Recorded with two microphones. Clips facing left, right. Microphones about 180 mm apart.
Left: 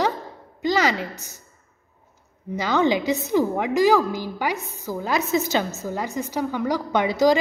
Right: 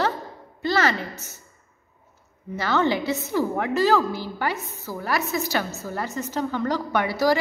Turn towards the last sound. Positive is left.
turn(degrees=20)  # may be behind; listen again after turning